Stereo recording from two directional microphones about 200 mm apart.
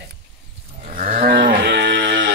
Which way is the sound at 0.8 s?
45° right (ahead or behind).